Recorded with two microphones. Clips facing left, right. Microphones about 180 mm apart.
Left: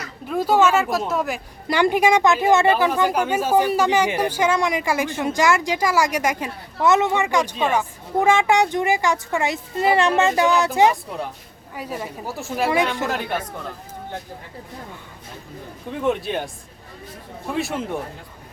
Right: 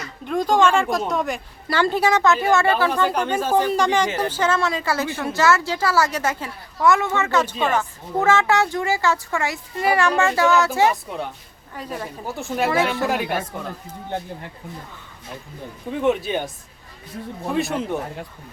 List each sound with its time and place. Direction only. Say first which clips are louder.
0.3 s speech: even; 5° left (ahead or behind)
1.6 s speech: left 2 dB; 15° left (ahead or behind); by 12.7 s centre (ahead or behind)
13.1 s speech: right 2 dB; 10° right (ahead or behind)
15.9 s speech: right 2 dB; centre (ahead or behind)
17.5 s speech: right 2 dB; centre (ahead or behind)